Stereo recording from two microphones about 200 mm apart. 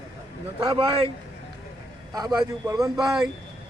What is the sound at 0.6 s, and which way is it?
Speech, 25° right (ahead or behind).